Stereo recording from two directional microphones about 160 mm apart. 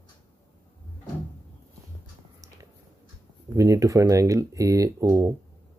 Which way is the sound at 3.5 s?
20° right (ahead or behind).